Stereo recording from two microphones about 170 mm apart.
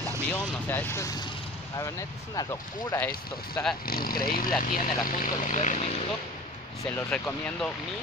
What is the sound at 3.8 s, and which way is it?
Speech, 60° left (ahead or behind).